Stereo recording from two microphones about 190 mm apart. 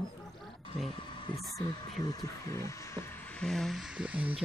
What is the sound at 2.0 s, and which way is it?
Speech, 20° left (ahead or behind).